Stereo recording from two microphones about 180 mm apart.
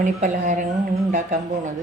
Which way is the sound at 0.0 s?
45° right (ahead or behind).